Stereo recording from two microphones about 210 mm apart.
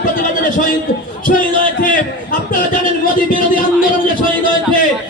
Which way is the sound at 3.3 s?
40° left (ahead or behind).